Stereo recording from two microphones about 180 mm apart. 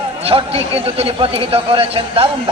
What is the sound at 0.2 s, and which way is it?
A man's voice, 30° right (ahead or behind).